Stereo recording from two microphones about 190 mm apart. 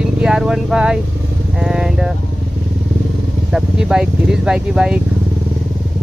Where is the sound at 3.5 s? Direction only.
5° right (ahead or behind).